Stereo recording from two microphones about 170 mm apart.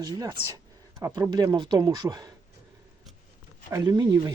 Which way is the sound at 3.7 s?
20° right (ahead or behind).